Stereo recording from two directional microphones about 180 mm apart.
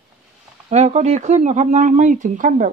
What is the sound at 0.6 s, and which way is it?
Speech, 40° right (ahead or behind).